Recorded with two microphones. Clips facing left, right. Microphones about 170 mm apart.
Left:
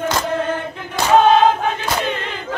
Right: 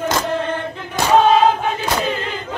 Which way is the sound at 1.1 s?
Centre (ahead or behind).